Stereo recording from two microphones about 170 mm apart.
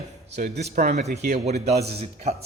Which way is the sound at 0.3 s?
75° right (ahead or behind).